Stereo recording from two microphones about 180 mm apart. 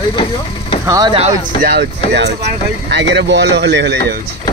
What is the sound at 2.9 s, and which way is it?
Speech, 75° right (ahead or behind).